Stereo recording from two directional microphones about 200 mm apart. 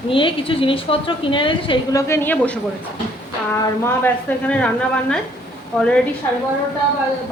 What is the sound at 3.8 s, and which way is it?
A woman's voice, 10° left (ahead or behind).